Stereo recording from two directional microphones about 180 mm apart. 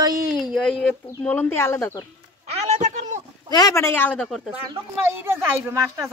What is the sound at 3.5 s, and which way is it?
Speech, 20° left (ahead or behind).